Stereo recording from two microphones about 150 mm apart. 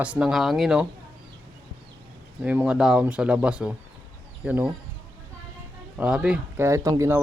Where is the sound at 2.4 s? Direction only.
10° right (ahead or behind).